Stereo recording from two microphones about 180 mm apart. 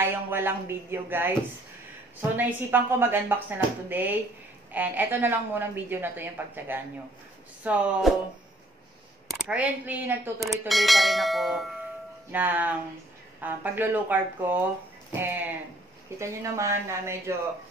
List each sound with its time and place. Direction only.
0.0 s a woman's voice: 10° right (ahead or behind)
2.3 s a woman's voice: 10° right (ahead or behind)
9.3 s a woman's voice: 5° right (ahead or behind)